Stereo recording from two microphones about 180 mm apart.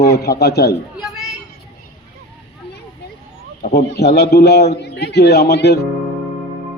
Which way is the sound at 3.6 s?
60° left (ahead or behind).